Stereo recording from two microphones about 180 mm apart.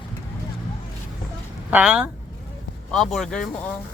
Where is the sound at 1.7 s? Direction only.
5° right (ahead or behind).